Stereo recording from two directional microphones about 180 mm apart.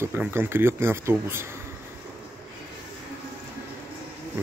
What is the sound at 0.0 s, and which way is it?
Speech, 10° right (ahead or behind).